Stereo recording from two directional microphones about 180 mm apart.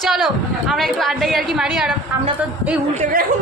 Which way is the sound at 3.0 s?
50° right (ahead or behind).